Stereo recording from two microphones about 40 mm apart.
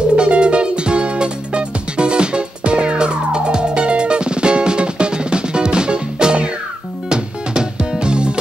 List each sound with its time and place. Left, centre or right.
0.1 s music: right